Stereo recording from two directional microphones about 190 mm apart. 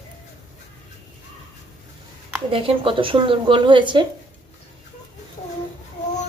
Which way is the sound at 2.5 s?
30° right (ahead or behind).